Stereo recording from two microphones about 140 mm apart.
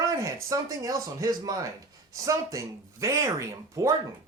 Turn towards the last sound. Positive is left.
turn(degrees=-20)  # may be behind; listen again after turning